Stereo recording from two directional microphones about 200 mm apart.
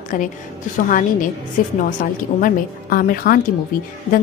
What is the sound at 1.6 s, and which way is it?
A woman's voice, 40° left (ahead or behind).